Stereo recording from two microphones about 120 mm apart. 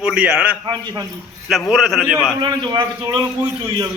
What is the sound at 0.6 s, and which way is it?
Speech, 35° right (ahead or behind).